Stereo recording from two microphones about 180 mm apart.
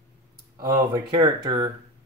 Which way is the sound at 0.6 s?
20° right (ahead or behind).